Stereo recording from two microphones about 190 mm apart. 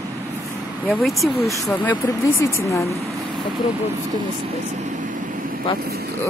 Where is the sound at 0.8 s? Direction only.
Centre (ahead or behind).